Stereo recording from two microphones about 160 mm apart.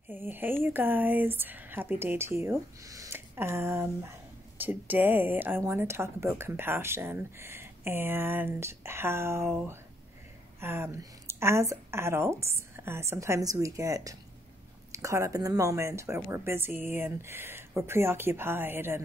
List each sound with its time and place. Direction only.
0.1 s speech: 10° right (ahead or behind)